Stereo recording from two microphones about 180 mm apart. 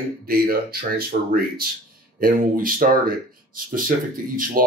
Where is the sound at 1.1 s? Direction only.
45° right (ahead or behind).